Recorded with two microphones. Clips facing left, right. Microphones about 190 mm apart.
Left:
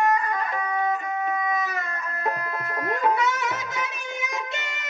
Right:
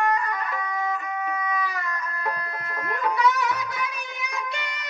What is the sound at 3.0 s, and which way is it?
Music, 25° left (ahead or behind).